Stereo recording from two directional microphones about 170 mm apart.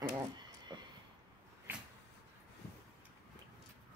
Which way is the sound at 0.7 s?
25° right (ahead or behind).